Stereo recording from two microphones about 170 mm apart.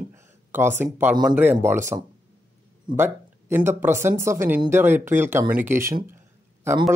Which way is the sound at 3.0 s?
15° right (ahead or behind).